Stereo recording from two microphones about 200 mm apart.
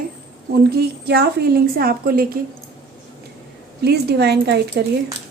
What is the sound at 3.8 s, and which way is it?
Speech, 55° right (ahead or behind).